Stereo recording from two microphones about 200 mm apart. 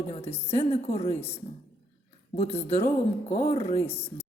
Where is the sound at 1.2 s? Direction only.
10° left (ahead or behind).